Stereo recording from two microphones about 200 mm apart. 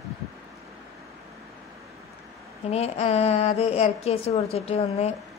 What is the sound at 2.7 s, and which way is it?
A woman's voice, 30° left (ahead or behind).